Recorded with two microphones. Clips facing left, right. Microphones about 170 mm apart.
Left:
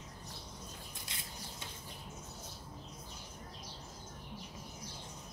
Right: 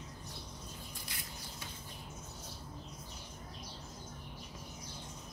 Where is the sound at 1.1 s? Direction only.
25° left (ahead or behind).